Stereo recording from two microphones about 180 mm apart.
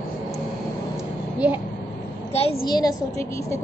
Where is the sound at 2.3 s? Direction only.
35° left (ahead or behind).